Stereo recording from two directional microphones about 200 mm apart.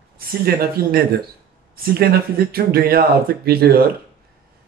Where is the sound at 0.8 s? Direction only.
50° right (ahead or behind).